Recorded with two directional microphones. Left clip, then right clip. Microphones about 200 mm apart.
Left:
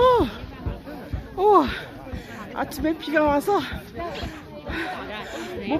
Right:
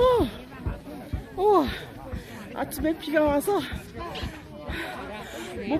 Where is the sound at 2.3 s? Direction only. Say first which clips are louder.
Left 4 dB; 5° right (ahead or behind).